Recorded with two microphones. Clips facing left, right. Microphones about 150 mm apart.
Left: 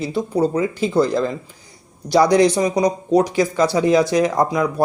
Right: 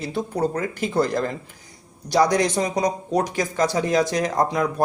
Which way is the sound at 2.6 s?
10° left (ahead or behind).